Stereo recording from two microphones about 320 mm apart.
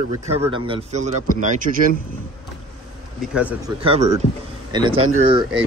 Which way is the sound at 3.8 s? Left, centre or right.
Centre.